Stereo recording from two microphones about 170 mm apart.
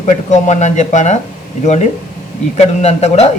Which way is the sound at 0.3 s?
45° left (ahead or behind).